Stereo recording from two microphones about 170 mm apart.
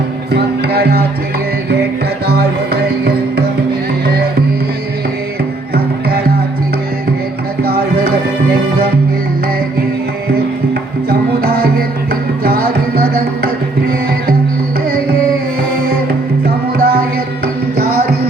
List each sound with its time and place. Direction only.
0.3 s music: 70° right (ahead or behind)
2.2 s music: 70° right (ahead or behind)
5.7 s music: 65° right (ahead or behind)
7.6 s music: 65° right (ahead or behind)
11.1 s music: 60° right (ahead or behind)
16.7 s music: 60° right (ahead or behind)